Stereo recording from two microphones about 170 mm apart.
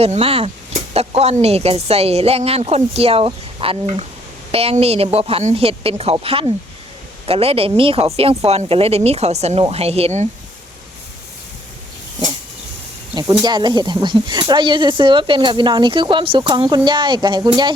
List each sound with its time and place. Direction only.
0.0 s speech: 35° right (ahead or behind)
13.1 s speech: 25° right (ahead or behind)